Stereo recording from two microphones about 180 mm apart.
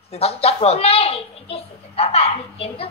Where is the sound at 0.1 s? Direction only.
35° left (ahead or behind).